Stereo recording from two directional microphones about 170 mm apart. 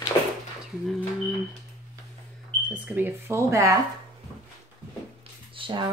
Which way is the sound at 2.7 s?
10° right (ahead or behind).